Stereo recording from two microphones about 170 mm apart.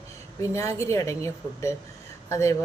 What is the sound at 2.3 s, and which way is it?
Speech, 15° left (ahead or behind).